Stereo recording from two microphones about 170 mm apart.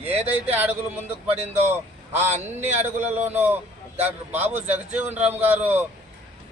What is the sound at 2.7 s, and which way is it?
A man's voice, 10° right (ahead or behind).